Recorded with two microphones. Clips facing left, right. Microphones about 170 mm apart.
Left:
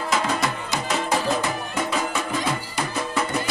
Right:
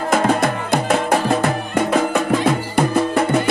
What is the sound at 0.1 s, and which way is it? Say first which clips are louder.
Music: right 8 dB; 55° right (ahead or behind).